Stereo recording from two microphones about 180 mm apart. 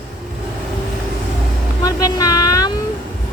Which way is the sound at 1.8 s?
20° left (ahead or behind).